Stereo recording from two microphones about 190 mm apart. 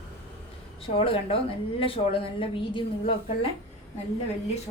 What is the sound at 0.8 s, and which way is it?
A woman's voice, 30° left (ahead or behind).